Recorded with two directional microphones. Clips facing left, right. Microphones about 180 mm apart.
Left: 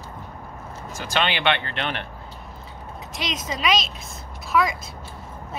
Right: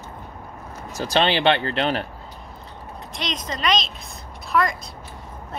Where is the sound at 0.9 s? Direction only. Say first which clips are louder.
Right 5 dB; 40° right (ahead or behind).